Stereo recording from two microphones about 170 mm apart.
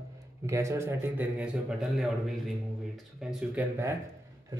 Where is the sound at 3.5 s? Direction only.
15° right (ahead or behind).